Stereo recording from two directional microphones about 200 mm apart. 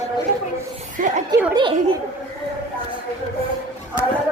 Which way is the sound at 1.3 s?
10° right (ahead or behind).